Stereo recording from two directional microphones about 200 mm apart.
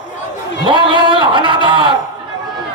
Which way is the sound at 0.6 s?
25° right (ahead or behind).